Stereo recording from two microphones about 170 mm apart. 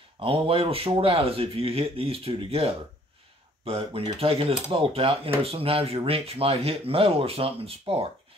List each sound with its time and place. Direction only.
0.2 s speech: 30° right (ahead or behind)